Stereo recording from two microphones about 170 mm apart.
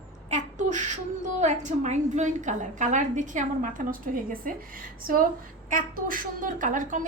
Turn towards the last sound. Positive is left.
turn(degrees=-50)  # may be behind; listen again after turning